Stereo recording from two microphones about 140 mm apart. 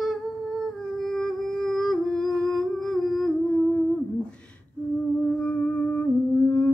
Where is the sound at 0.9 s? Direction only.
Centre (ahead or behind).